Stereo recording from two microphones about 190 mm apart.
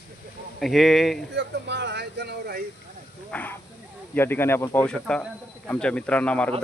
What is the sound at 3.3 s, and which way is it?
Speech, 10° left (ahead or behind).